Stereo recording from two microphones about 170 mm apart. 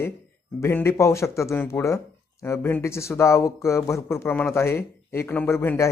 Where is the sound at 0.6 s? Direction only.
15° left (ahead or behind).